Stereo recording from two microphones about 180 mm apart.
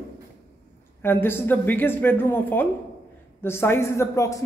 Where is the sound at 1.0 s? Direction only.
10° left (ahead or behind).